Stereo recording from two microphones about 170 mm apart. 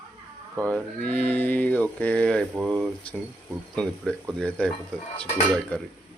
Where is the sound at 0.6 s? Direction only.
5° left (ahead or behind).